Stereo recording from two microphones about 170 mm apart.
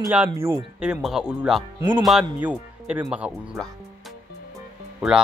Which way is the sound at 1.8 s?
30° right (ahead or behind).